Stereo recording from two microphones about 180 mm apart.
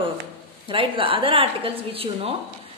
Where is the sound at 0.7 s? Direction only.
30° right (ahead or behind).